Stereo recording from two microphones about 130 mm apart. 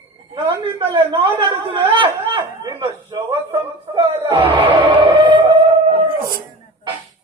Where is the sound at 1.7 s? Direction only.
40° right (ahead or behind).